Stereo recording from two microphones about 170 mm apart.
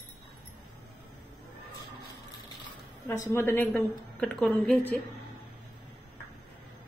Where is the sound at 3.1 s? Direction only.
15° left (ahead or behind).